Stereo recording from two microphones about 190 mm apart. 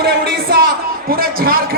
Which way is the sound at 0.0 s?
55° right (ahead or behind).